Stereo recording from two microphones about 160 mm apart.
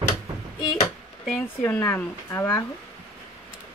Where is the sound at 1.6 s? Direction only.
15° left (ahead or behind).